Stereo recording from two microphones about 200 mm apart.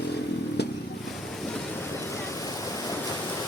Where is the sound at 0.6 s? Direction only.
55° left (ahead or behind).